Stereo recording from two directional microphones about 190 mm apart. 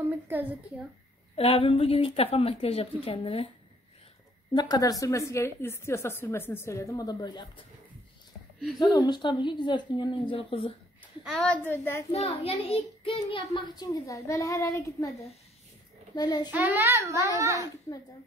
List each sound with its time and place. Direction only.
0.0 s a sound: 10° right (ahead or behind)
1.3 s a woman's voice: 30° left (ahead or behind)
4.6 s a woman's voice: 20° left (ahead or behind)
8.7 s a woman's voice: 20° left (ahead or behind)
11.3 s a woman's voice: 5° left (ahead or behind)
12.1 s a child's voice: 30° left (ahead or behind)
13.5 s a woman's voice: 20° left (ahead or behind)
16.2 s a woman's voice: 20° left (ahead or behind)
16.4 s a child's voice: 10° right (ahead or behind)